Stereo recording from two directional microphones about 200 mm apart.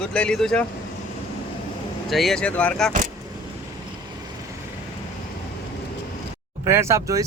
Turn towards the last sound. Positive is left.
turn(degrees=-15)  # may be behind; listen again after turning